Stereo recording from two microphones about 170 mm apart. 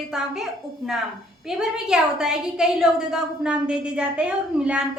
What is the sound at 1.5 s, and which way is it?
A woman's voice, 5° right (ahead or behind).